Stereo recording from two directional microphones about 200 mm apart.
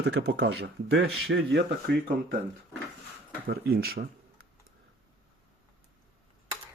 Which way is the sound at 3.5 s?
50° right (ahead or behind).